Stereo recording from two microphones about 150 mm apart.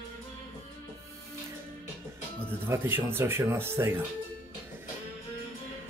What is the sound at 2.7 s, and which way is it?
Speech, 15° right (ahead or behind).